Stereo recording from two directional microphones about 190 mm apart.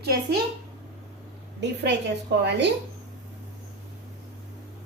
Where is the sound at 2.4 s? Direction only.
65° right (ahead or behind).